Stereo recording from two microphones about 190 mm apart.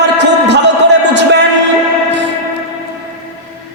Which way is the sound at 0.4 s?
65° right (ahead or behind).